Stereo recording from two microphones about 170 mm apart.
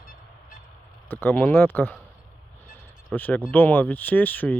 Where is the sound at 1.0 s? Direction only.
10° left (ahead or behind).